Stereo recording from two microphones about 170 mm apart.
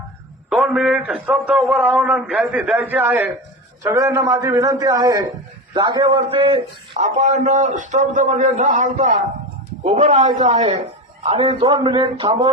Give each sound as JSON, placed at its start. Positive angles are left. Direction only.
{"t": 0.5, "sound": "a man's voice", "side_deg": 0}
{"t": 11.2, "sound": "a man's voice", "side_deg": -30}